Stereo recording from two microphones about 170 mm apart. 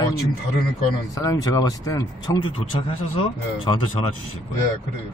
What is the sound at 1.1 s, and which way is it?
Speech, 20° left (ahead or behind).